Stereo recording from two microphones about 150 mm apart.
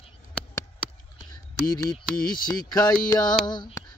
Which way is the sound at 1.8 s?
25° left (ahead or behind).